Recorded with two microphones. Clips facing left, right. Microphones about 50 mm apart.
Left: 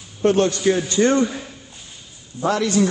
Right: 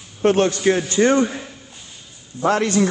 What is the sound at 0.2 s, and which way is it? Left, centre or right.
Speech, right.